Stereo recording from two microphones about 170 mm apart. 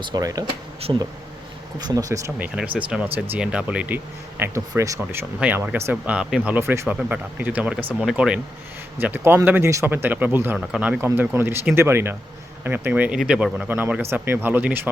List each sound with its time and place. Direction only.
0.0 s speech: 20° right (ahead or behind)
2.6 s speech: 5° right (ahead or behind)